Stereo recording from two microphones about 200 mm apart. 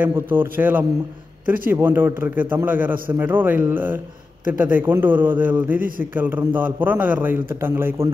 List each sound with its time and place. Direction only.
0.0 s a man's voice: 10° right (ahead or behind)
5.8 s a man's voice: 45° right (ahead or behind)
6.1 s a man's voice: 10° right (ahead or behind)